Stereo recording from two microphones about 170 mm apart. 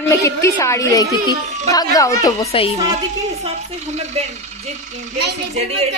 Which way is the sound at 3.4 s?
40° right (ahead or behind).